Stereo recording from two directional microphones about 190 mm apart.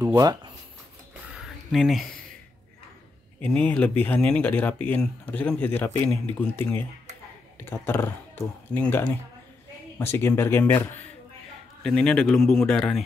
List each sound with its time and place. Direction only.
0.0 s speech: 20° right (ahead or behind)
1.2 s a sound: 5° right (ahead or behind)
3.3 s speech: 5° left (ahead or behind)
7.6 s speech: 10° left (ahead or behind)